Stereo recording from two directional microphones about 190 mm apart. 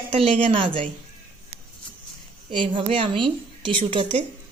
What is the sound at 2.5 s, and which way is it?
Speech, 25° right (ahead or behind).